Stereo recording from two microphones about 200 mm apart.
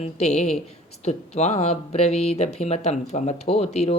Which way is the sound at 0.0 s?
35° left (ahead or behind).